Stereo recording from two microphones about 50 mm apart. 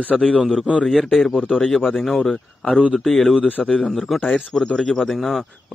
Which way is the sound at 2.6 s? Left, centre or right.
Centre.